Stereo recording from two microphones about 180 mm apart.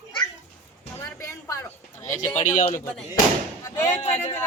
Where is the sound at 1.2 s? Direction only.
15° left (ahead or behind).